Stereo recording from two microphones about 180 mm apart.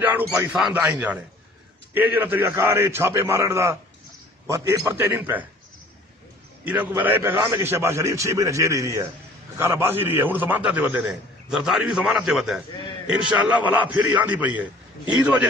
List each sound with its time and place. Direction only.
0.0 s a man's voice: 10° right (ahead or behind)
6.6 s a man's voice: 10° right (ahead or behind)